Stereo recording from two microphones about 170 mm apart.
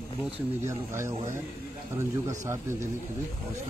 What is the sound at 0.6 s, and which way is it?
Speech, 15° right (ahead or behind).